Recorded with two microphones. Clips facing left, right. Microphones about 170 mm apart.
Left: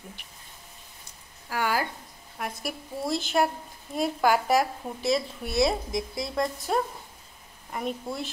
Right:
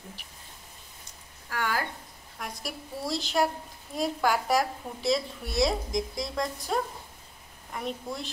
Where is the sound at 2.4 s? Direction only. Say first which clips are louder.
Left 4 dB; 55° left (ahead or behind).